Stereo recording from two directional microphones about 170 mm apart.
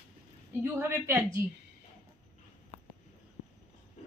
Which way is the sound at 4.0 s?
40° left (ahead or behind).